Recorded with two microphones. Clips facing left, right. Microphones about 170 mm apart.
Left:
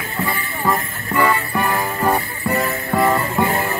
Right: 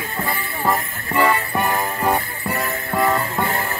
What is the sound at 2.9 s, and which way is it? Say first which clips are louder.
Music: left 2 dB; centre (ahead or behind).